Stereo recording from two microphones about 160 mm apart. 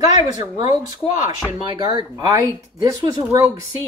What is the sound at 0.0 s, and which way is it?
Speech, 25° right (ahead or behind).